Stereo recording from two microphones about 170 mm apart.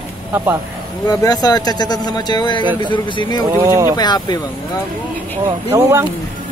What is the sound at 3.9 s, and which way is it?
Speech, 25° left (ahead or behind).